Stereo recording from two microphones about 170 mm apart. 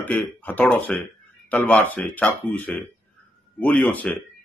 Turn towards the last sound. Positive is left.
turn(degrees=10)  # may be behind; listen again after turning